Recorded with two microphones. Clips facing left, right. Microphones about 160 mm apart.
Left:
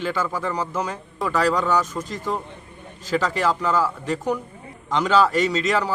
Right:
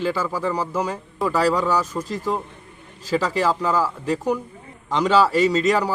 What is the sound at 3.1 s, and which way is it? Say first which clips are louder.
Speech: right 1 dB; 35° right (ahead or behind).